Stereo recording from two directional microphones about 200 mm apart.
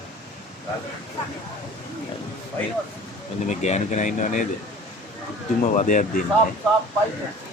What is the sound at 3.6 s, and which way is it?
Speech, 35° left (ahead or behind).